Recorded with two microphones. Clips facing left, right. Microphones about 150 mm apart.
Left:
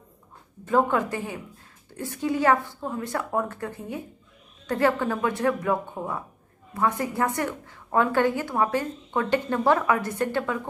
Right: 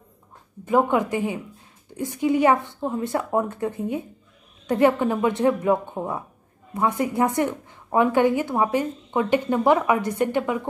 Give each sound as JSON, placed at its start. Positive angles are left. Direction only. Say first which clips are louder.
{"t": 0.7, "sound": "a woman's voice", "louder": "right 2 dB", "side_deg": -15}